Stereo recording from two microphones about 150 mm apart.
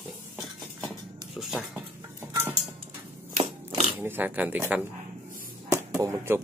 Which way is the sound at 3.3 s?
45° right (ahead or behind).